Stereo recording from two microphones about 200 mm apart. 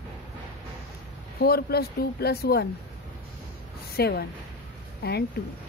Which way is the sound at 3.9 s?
55° left (ahead or behind).